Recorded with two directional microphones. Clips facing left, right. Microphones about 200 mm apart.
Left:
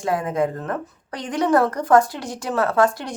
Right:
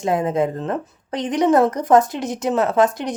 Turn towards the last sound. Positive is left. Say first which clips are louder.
# right 2 dB
turn(degrees=-20)  # may be behind; listen again after turning